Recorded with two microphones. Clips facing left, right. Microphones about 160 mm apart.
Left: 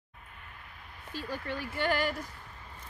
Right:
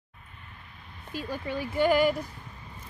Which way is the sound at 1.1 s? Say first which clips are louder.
Right 4 dB; 15° right (ahead or behind).